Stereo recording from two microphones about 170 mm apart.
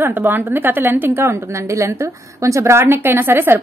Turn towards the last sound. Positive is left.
turn(degrees=-10)  # may be behind; listen again after turning